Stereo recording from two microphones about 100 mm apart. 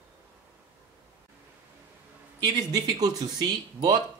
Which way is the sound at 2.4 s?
45° right (ahead or behind).